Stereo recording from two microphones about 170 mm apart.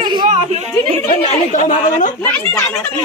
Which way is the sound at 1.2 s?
45° left (ahead or behind).